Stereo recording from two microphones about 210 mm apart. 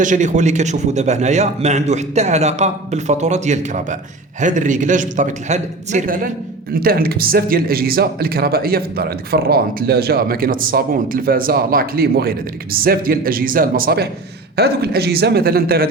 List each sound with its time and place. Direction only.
0.0 s a man's voice: 35° right (ahead or behind)